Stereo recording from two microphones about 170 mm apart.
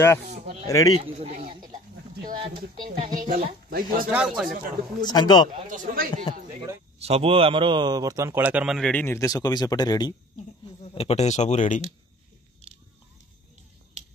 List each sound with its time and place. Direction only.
0.3 s speech: 40° right (ahead or behind)
0.7 s speech: 20° left (ahead or behind)
1.0 s speech: 40° right (ahead or behind)
2.5 s speech: 60° right (ahead or behind)
4.1 s speech: 5° right (ahead or behind)
5.0 s speech: 25° left (ahead or behind)
5.7 s speech: 50° right (ahead or behind)
7.0 s a man's voice: 35° right (ahead or behind); by 10.1 s 25° left (ahead or behind)
10.8 s speech: 35° left (ahead or behind)